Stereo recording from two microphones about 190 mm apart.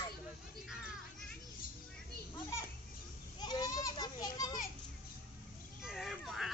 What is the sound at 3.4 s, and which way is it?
Children playing, 20° left (ahead or behind).